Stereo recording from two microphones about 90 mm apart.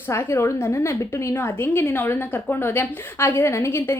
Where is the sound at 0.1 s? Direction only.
30° left (ahead or behind).